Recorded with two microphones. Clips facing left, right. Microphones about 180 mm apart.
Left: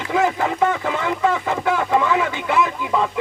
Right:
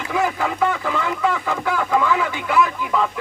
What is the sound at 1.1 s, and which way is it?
Speech, 25° left (ahead or behind).